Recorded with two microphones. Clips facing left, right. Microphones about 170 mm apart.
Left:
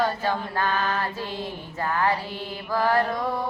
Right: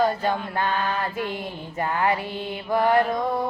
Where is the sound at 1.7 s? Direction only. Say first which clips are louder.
Right 1 dB; 20° right (ahead or behind).